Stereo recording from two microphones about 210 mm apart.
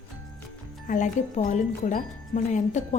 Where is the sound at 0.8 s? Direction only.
35° left (ahead or behind).